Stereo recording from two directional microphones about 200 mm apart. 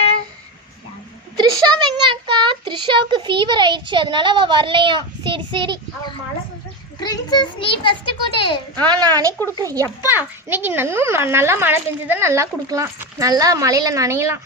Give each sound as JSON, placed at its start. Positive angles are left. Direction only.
{"t": 1.4, "sound": "a child's voice", "side_deg": -20}
{"t": 7.0, "sound": "a child's voice", "side_deg": 20}
{"t": 8.8, "sound": "a woman's voice", "side_deg": -20}